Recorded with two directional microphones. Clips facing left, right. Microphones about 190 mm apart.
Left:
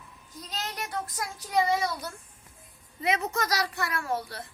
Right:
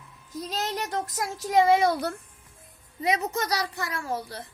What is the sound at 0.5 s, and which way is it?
Speech, 40° right (ahead or behind).